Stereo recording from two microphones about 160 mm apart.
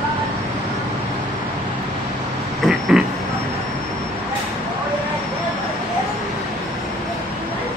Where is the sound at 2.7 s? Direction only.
5° right (ahead or behind).